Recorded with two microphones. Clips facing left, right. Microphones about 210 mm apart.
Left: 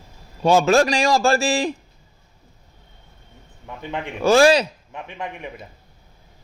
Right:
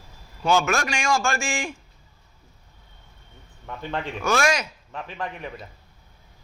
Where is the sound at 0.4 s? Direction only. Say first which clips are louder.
Left 7 dB; 30° left (ahead or behind).